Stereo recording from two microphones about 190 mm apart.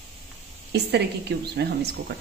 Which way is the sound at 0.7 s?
60° right (ahead or behind).